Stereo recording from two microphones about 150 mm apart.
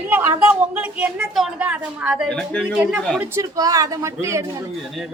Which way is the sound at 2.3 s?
5° left (ahead or behind).